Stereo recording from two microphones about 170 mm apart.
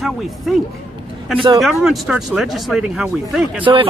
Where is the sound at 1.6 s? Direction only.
Centre (ahead or behind).